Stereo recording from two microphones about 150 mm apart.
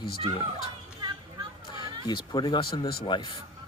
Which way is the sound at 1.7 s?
30° left (ahead or behind).